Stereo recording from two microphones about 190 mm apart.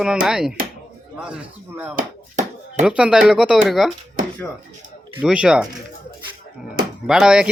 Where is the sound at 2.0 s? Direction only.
40° right (ahead or behind).